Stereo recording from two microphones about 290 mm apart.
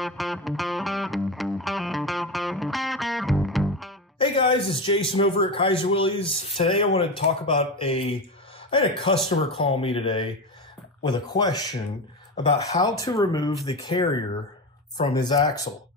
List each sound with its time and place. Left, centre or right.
0.0 s music: centre
4.2 s a man's voice: centre